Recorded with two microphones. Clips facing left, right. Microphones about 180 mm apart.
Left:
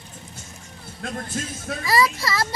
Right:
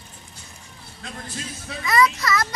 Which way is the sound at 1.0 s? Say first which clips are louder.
Left 5 dB; 50° left (ahead or behind).